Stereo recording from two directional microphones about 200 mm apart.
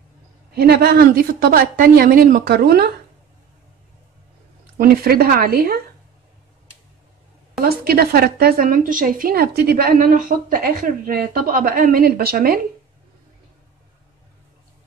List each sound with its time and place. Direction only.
0.6 s a woman's voice: 50° right (ahead or behind)
4.7 s a woman's voice: 50° right (ahead or behind)
7.6 s a woman's voice: 50° right (ahead or behind)